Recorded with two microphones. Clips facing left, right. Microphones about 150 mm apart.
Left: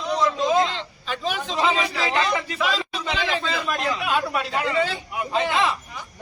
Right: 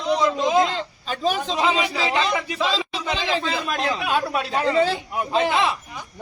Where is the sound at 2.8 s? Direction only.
15° right (ahead or behind).